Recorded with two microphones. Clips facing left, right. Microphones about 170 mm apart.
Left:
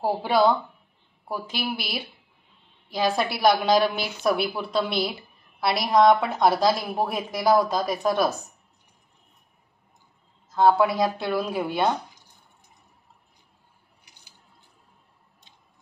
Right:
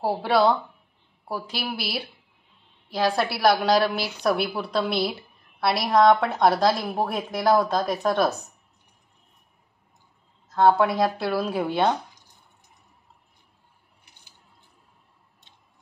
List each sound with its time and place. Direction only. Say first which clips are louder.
0.0 s a woman's voice: even; centre (ahead or behind)
1.6 s a woman's voice: even; centre (ahead or behind)
10.5 s a woman's voice: even; 5° left (ahead or behind)